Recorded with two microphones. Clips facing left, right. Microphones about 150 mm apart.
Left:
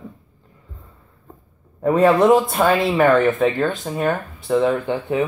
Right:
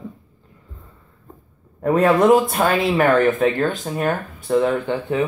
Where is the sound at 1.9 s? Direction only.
10° left (ahead or behind).